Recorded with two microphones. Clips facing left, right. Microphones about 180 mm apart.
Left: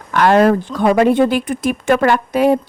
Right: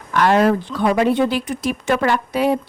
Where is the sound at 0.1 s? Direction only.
55° left (ahead or behind).